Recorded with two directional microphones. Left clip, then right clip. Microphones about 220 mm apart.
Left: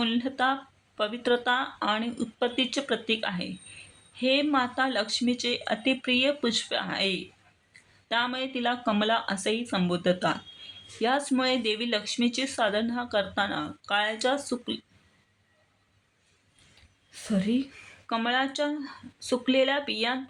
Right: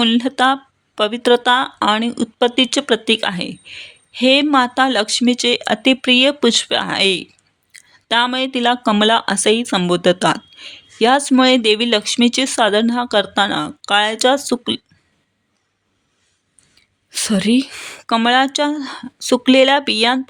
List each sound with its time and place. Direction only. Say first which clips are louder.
0.0 s speech: right 12 dB; 50° right (ahead or behind)
17.1 s speech: right 13 dB; 45° right (ahead or behind)